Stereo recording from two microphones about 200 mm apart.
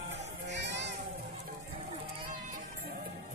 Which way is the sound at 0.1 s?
60° right (ahead or behind).